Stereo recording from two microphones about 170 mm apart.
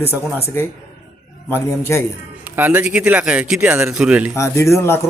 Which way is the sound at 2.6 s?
10° right (ahead or behind).